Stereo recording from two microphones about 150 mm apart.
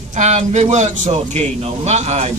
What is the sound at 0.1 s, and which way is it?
A man's voice, 50° right (ahead or behind).